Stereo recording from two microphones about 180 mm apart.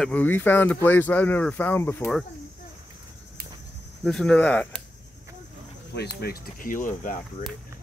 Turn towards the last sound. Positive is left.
turn(degrees=45)  # may be behind; listen again after turning